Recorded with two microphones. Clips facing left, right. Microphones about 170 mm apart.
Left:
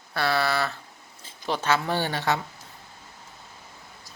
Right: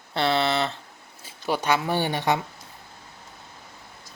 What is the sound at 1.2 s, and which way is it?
Speech, 10° right (ahead or behind).